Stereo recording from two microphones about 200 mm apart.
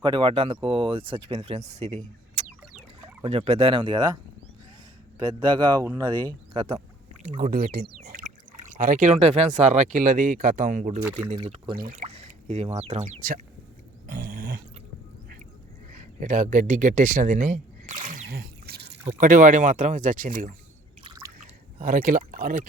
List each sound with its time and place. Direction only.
0.0 s speech: 25° right (ahead or behind)
5.3 s speech: 20° right (ahead or behind)
6.2 s speech: 30° right (ahead or behind)
11.3 s speech: 25° right (ahead or behind)
11.8 s speech: 40° right (ahead or behind)
12.0 s speech: 30° right (ahead or behind)
14.1 s a sound: 45° right (ahead or behind)
15.9 s a sound: 40° right (ahead or behind); by 18.9 s 55° right (ahead or behind)
19.0 s speech: 40° right (ahead or behind)